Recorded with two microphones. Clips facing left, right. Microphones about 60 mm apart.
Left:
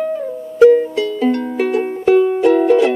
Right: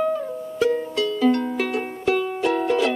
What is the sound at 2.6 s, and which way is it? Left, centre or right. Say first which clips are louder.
Music: left 8 dB; centre.